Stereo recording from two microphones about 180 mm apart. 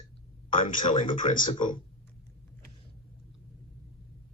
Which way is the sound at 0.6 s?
40° left (ahead or behind).